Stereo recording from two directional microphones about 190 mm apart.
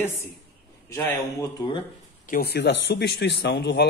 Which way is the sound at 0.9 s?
10° left (ahead or behind).